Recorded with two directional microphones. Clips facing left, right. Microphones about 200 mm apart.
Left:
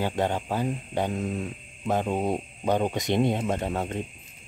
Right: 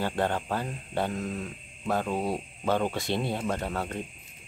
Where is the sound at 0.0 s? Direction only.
15° left (ahead or behind).